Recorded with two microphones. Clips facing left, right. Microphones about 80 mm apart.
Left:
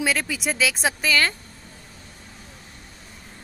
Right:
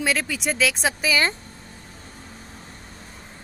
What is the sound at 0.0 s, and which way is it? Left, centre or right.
Speech, centre.